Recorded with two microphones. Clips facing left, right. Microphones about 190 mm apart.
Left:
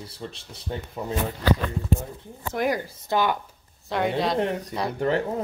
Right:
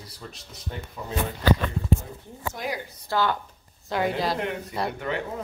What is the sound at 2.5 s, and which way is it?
Speech, 50° left (ahead or behind).